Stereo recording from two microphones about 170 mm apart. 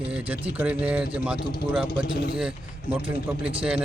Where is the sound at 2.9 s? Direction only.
30° right (ahead or behind).